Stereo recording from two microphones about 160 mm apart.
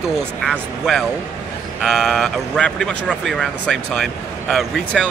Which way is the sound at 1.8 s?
Centre (ahead or behind).